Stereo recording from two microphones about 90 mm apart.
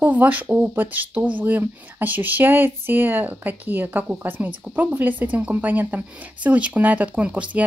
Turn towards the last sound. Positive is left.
turn(degrees=-15)  # may be behind; listen again after turning